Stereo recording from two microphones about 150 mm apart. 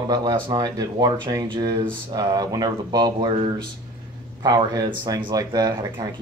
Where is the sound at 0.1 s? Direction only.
30° right (ahead or behind).